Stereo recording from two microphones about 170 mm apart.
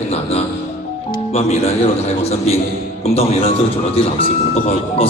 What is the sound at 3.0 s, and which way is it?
Speech, 35° left (ahead or behind).